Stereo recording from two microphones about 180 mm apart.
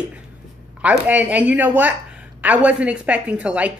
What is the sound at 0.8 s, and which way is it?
A woman's voice, 10° right (ahead or behind).